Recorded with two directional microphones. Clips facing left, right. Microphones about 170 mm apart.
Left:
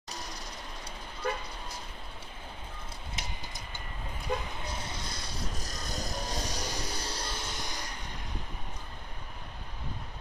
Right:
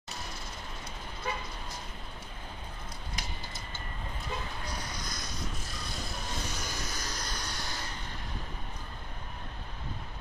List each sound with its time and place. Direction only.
3.2 s vehicle: 25° left (ahead or behind)
4.3 s vehicle: 55° left (ahead or behind)
4.7 s vehicle: 25° left (ahead or behind)